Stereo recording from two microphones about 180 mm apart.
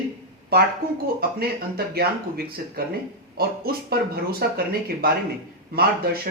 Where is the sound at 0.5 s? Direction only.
60° right (ahead or behind).